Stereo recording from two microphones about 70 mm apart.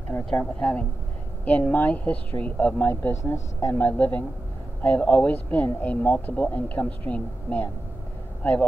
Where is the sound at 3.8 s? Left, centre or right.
Left.